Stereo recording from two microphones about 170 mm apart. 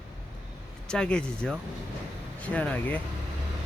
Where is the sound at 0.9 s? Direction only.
5° left (ahead or behind).